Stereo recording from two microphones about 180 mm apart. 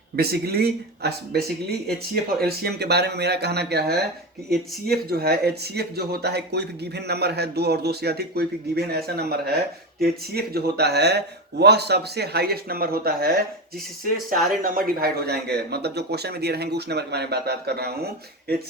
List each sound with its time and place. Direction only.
0.2 s speech: 60° right (ahead or behind)
14.6 s speech: 55° right (ahead or behind)